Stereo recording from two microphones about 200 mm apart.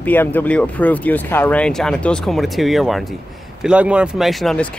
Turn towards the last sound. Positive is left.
turn(degrees=5)  # may be behind; listen again after turning